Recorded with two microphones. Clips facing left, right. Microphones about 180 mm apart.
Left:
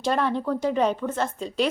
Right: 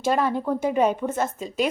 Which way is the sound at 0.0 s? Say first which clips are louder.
Right 1 dB; 5° right (ahead or behind).